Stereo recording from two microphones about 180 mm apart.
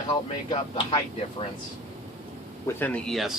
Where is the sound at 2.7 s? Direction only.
10° left (ahead or behind).